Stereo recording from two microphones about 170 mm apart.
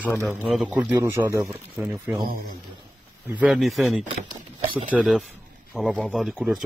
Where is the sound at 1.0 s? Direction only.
15° right (ahead or behind).